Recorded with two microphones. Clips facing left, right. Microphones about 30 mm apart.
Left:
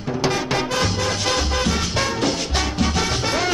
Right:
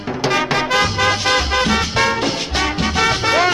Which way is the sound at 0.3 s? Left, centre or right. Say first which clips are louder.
Right 9 dB; right.